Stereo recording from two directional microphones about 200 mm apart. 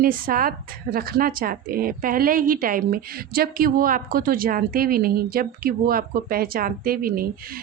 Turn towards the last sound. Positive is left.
turn(degrees=-45)  # may be behind; listen again after turning